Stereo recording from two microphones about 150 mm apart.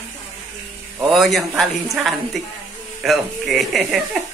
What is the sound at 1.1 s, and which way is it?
Speech, centre (ahead or behind).